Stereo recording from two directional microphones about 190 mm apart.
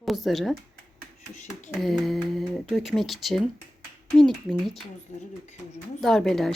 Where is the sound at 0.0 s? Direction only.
Centre (ahead or behind).